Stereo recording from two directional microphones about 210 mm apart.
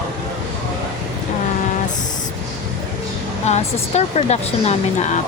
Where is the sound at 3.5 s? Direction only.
30° left (ahead or behind).